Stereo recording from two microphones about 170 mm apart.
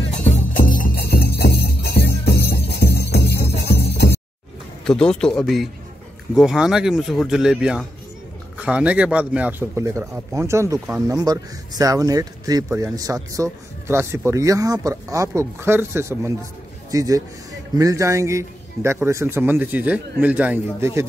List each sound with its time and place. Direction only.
0.2 s music: 50° left (ahead or behind); by 4.2 s 75° left (ahead or behind)
4.8 s speech: 5° left (ahead or behind); by 21.0 s 10° right (ahead or behind)